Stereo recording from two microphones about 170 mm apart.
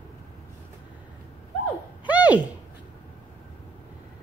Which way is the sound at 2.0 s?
10° right (ahead or behind).